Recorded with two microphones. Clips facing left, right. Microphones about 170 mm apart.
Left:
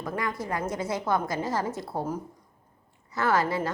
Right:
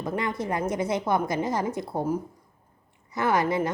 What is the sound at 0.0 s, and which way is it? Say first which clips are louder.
A woman's voice: right 3 dB; 20° right (ahead or behind).